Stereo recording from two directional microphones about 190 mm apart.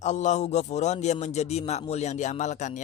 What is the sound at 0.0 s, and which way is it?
A man's voice, 40° left (ahead or behind).